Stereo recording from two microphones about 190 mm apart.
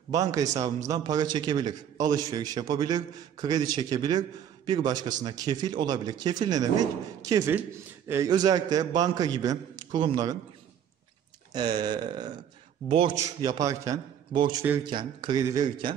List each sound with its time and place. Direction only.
0.1 s a man's voice: 20° right (ahead or behind)
11.5 s a man's voice: 20° right (ahead or behind)
13.1 s a man's voice: 15° right (ahead or behind)